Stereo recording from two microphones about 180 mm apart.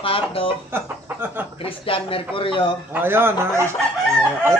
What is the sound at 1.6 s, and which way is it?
A man's voice, 30° left (ahead or behind).